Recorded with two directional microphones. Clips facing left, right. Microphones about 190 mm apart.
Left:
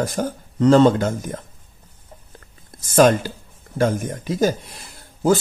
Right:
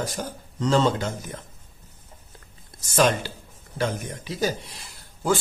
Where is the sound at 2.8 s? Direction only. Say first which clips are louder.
Left 7 dB; 50° left (ahead or behind).